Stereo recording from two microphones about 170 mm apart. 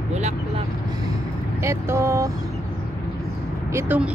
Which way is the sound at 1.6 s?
15° right (ahead or behind).